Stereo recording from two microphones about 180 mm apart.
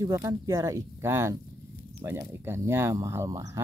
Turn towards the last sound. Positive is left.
turn(degrees=-20)  # may be behind; listen again after turning